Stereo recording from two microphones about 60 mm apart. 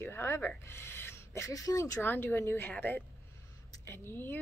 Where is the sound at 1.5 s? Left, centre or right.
Left.